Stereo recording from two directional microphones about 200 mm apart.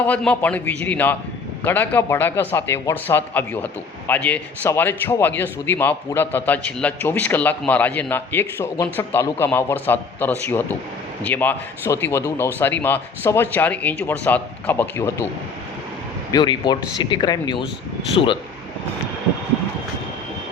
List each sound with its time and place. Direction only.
0.0 s a man's voice: 5° left (ahead or behind)
16.3 s speech: 20° left (ahead or behind)